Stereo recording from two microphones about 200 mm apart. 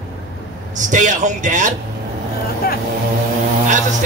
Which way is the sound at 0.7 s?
40° right (ahead or behind).